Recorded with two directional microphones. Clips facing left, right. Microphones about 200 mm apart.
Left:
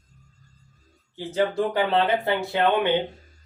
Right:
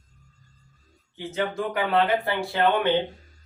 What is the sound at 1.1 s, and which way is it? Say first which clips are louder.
Speech: left 4 dB; 35° left (ahead or behind).